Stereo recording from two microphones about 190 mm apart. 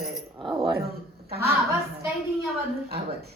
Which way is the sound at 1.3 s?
55° right (ahead or behind).